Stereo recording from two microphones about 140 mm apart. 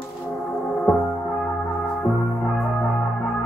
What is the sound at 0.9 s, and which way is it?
Music, 5° left (ahead or behind).